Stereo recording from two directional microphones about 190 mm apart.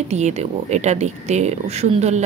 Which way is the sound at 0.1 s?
35° right (ahead or behind).